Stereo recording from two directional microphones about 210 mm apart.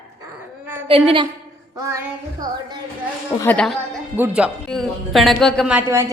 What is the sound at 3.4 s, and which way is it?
A man's voice, 5° left (ahead or behind).